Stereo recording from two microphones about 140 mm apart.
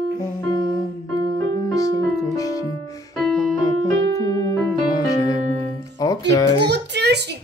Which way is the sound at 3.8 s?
20° left (ahead or behind).